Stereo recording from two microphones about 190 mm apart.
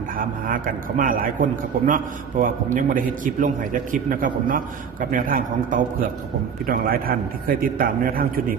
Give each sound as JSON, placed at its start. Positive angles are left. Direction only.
{"t": 0.2, "sound": "a man's voice", "side_deg": -45}